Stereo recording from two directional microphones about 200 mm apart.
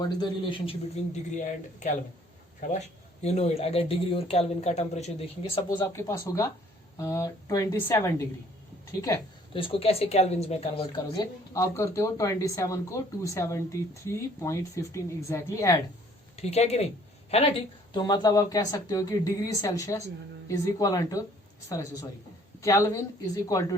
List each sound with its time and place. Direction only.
0.0 s a man's voice: 25° left (ahead or behind)
2.6 s speech: 40° left (ahead or behind)
5.6 s speech: 15° left (ahead or behind)
16.3 s speech: 30° left (ahead or behind)
17.9 s speech: 20° left (ahead or behind)
22.6 s speech: 15° left (ahead or behind)